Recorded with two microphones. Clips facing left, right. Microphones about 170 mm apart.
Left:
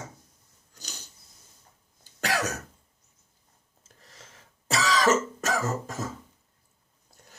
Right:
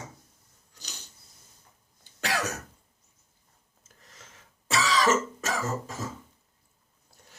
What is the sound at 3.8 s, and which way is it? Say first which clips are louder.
Throat clearing: left 1 dB; 35° left (ahead or behind).